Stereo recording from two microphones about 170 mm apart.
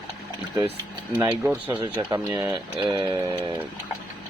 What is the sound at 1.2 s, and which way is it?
Speech, 15° right (ahead or behind).